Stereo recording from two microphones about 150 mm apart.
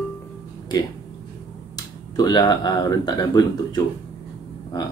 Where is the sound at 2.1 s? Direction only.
25° left (ahead or behind).